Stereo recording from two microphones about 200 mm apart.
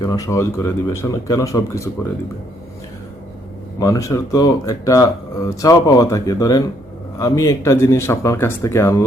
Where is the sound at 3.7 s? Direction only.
15° left (ahead or behind).